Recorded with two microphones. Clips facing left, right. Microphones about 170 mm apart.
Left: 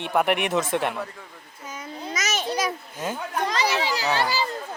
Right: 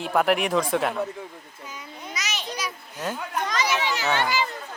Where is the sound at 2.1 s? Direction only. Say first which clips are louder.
Left 6 dB; 45° left (ahead or behind).